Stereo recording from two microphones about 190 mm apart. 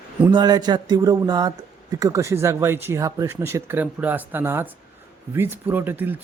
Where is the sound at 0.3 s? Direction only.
20° right (ahead or behind).